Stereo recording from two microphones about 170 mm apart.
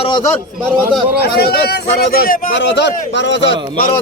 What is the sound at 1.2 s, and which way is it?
A man's voice, 65° left (ahead or behind).